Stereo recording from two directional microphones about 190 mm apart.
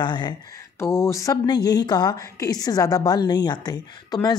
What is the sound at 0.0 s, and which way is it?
Speech, 25° left (ahead or behind).